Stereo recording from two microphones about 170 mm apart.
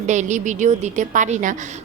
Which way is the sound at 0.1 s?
45° right (ahead or behind).